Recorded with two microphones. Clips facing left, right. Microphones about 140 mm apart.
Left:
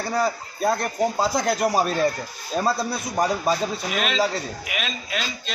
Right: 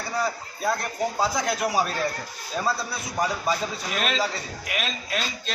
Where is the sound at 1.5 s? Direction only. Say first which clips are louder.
Left 4 dB; 40° left (ahead or behind).